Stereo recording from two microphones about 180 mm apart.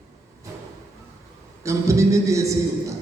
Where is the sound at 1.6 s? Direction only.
15° right (ahead or behind).